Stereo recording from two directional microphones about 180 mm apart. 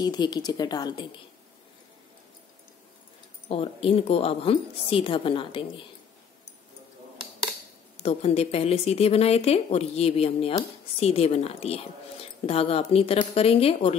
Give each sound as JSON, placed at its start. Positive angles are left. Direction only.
{"t": 0.0, "sound": "speech", "side_deg": 25}
{"t": 3.4, "sound": "speech", "side_deg": 30}
{"t": 8.0, "sound": "speech", "side_deg": 35}